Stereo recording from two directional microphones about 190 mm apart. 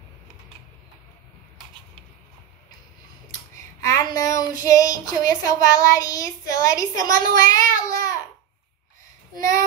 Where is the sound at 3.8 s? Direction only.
15° left (ahead or behind).